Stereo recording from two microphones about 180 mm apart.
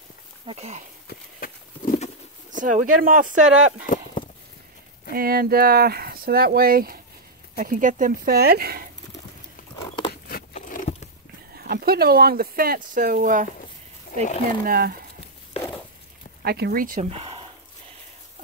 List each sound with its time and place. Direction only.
0.5 s speech: 35° right (ahead or behind)
1.0 s horse: 55° left (ahead or behind)
2.6 s speech: 45° right (ahead or behind)
3.8 s clip-clop: 45° left (ahead or behind)
5.1 s speech: 55° right (ahead or behind)
9.8 s biting: 25° left (ahead or behind)
10.2 s a sound: 50° left (ahead or behind)
11.5 s speech: 60° right (ahead or behind)
14.6 s speech: 55° right (ahead or behind)
16.4 s speech: 60° right (ahead or behind)
17.1 s a sound: 30° right (ahead or behind)